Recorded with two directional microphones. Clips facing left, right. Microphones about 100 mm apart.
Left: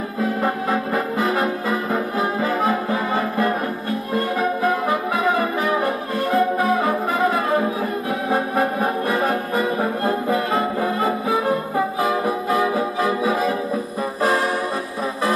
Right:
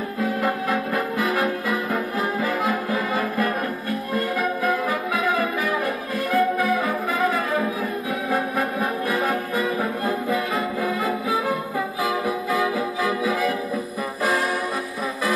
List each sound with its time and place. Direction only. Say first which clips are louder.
0.4 s music: left 2 dB; 30° left (ahead or behind)
2.4 s brass instrument: left 3 dB; 30° left (ahead or behind)
4.4 s music: left 3 dB; 30° left (ahead or behind)
5.8 s brass instrument: left 3 dB; 30° left (ahead or behind)
9.6 s brass instrument: left 3 dB; 30° left (ahead or behind)
12.4 s music: left 4 dB; 30° left (ahead or behind)